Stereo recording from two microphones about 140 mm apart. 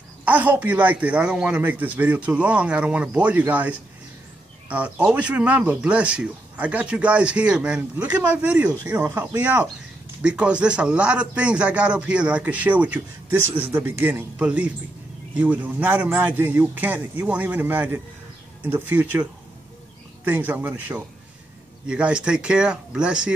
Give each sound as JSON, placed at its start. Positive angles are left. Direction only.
{"t": 0.2, "sound": "a man's voice", "side_deg": -10}
{"t": 8.9, "sound": "speech", "side_deg": -25}
{"t": 9.2, "sound": "a man's voice", "side_deg": -15}
{"t": 20.2, "sound": "a man's voice", "side_deg": -10}